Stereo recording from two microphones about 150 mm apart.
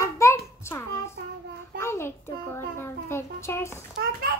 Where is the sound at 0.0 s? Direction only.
20° left (ahead or behind).